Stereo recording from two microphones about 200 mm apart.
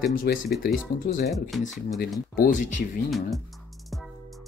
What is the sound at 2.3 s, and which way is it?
Speech, 45° left (ahead or behind).